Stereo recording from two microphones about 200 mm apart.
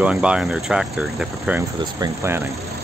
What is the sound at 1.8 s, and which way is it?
Speech, 15° right (ahead or behind).